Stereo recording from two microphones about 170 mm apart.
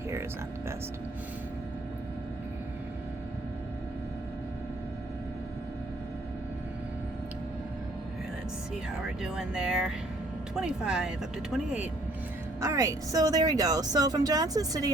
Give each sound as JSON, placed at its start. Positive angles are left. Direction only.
{"t": 9.2, "sound": "speech", "side_deg": -5}